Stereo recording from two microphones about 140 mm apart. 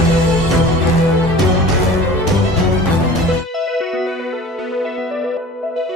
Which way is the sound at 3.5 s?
Centre (ahead or behind).